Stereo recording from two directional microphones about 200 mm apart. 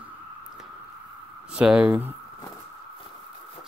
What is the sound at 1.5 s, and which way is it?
Speech, 5° right (ahead or behind).